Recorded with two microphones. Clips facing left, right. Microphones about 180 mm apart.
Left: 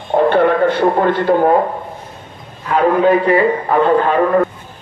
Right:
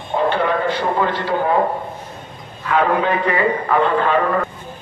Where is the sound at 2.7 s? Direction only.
40° left (ahead or behind).